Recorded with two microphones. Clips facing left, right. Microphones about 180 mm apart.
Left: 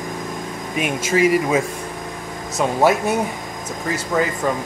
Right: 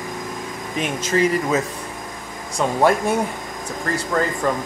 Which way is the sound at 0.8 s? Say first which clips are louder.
Left 2 dB; 10° left (ahead or behind).